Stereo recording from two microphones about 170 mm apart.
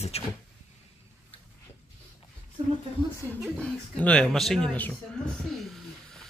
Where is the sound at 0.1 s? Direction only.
35° left (ahead or behind).